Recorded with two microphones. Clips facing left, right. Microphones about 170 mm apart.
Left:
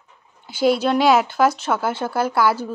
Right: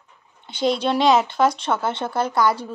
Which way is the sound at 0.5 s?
5° left (ahead or behind).